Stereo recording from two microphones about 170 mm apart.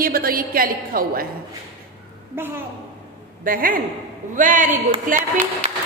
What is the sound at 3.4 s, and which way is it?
A woman's voice, 55° right (ahead or behind).